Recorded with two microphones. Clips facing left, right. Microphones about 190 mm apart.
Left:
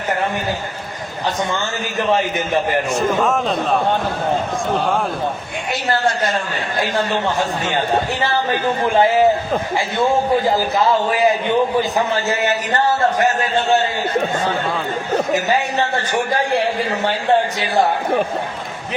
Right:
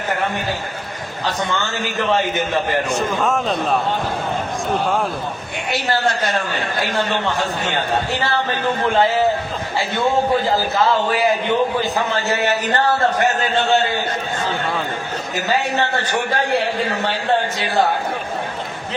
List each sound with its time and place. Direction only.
3.2 s a man's voice: centre (ahead or behind)
8.9 s a man's voice: 15° left (ahead or behind)